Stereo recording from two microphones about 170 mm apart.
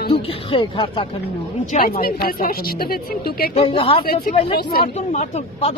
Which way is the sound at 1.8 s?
60° left (ahead or behind).